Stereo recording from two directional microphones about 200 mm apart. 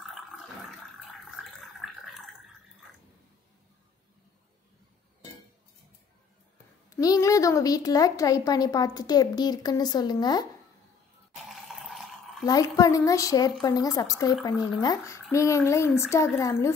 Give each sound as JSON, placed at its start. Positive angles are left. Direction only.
{"t": 0.1, "sound": "water", "side_deg": 0}
{"t": 1.8, "sound": "a sound", "side_deg": 0}
{"t": 7.0, "sound": "a woman's voice", "side_deg": 15}
{"t": 11.4, "sound": "water", "side_deg": 0}
{"t": 12.4, "sound": "a woman's voice", "side_deg": 15}